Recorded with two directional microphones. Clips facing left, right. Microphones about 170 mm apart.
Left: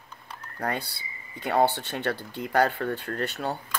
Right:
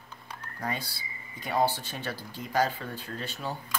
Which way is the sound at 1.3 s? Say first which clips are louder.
Left 4 dB; 65° left (ahead or behind).